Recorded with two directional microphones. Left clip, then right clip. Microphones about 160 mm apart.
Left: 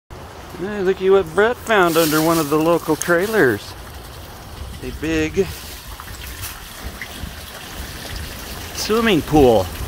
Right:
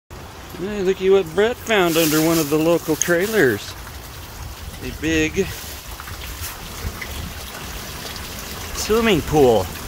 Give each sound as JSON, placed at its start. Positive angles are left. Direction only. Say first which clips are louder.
{"t": 0.7, "sound": "speech", "louder": "left 1 dB", "side_deg": -20}
{"t": 5.0, "sound": "speech", "louder": "even", "side_deg": -10}
{"t": 8.8, "sound": "speech", "louder": "left 1 dB", "side_deg": -5}